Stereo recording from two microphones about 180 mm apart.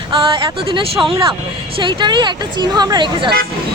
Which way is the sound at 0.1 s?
30° right (ahead or behind).